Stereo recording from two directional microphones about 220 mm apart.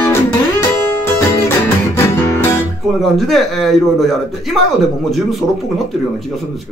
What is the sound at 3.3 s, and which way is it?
A man's voice, centre (ahead or behind).